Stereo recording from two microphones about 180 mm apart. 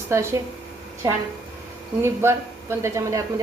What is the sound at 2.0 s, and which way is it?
A woman's voice, 15° right (ahead or behind).